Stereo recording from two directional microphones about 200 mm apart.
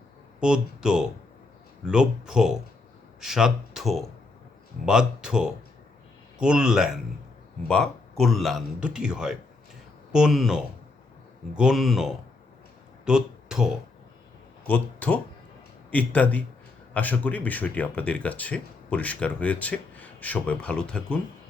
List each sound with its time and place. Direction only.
0.3 s a man's voice: 5° right (ahead or behind)
13.1 s a sound: 5° right (ahead or behind)
14.7 s speech: 5° left (ahead or behind)